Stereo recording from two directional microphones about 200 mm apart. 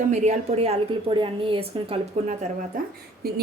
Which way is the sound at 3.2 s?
50° right (ahead or behind).